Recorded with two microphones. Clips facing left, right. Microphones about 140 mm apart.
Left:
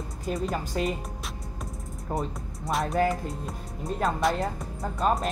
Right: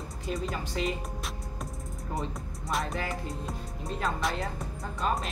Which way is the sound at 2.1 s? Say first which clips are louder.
Left 4 dB; 40° left (ahead or behind).